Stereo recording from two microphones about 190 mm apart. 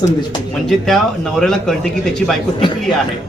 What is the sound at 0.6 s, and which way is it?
Speech, centre (ahead or behind).